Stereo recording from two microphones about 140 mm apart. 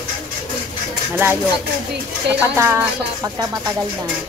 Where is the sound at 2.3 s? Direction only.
15° right (ahead or behind).